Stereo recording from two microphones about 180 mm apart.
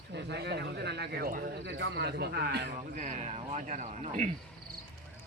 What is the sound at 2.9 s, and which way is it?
Speech, 45° right (ahead or behind).